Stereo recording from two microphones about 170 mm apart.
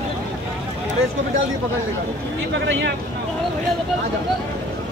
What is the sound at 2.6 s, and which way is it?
Speech, 90° right.